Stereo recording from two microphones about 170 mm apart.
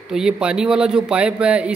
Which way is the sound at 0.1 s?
5° right (ahead or behind).